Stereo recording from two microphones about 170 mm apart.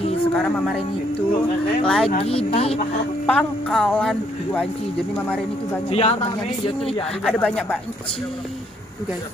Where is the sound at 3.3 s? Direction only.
5° left (ahead or behind).